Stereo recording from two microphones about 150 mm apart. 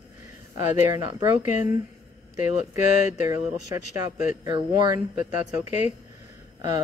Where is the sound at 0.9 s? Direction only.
30° right (ahead or behind).